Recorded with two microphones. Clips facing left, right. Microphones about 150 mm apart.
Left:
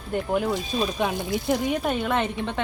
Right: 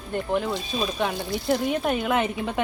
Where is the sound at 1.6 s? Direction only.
5° right (ahead or behind).